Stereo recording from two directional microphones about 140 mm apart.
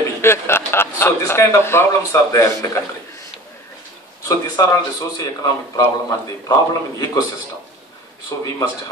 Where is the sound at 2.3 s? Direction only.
25° left (ahead or behind).